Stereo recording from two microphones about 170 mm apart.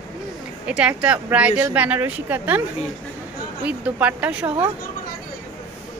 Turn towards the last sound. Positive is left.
turn(degrees=-5)  # may be behind; listen again after turning